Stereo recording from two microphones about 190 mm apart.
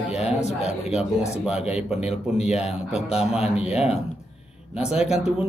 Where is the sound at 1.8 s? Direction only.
5° right (ahead or behind).